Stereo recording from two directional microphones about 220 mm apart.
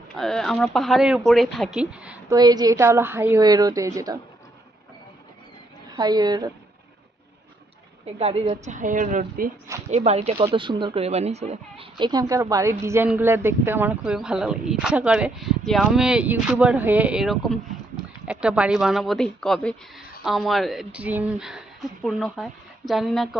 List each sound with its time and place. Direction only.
0.2 s speech: centre (ahead or behind)
2.3 s speech: 15° right (ahead or behind)
6.0 s speech: 20° right (ahead or behind)
8.2 s a woman's voice: 25° right (ahead or behind); by 23.4 s centre (ahead or behind)